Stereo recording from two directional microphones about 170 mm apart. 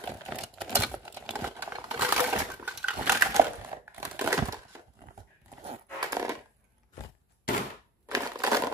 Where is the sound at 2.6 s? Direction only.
10° right (ahead or behind).